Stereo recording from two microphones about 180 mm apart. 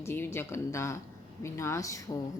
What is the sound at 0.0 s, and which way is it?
Speech, 15° left (ahead or behind).